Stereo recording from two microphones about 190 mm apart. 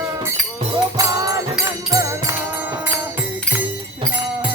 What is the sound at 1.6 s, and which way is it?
Music, 20° right (ahead or behind).